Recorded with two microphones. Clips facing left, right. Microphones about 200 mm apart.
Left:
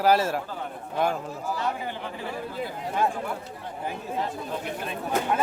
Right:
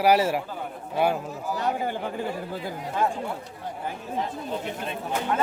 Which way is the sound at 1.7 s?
45° right (ahead or behind).